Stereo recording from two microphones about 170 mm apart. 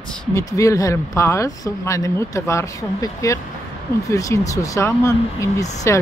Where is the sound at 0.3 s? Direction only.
20° left (ahead or behind).